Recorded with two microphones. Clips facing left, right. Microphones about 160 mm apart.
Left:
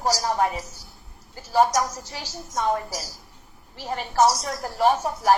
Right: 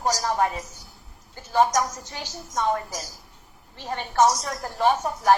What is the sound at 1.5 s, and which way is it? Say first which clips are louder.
A woman's voice: left 1 dB; 30° left (ahead or behind).